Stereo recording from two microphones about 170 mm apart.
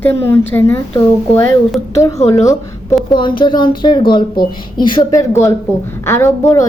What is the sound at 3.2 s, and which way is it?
Speech, 25° left (ahead or behind).